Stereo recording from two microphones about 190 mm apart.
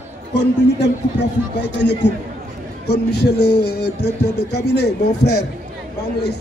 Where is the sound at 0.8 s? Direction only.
65° left (ahead or behind).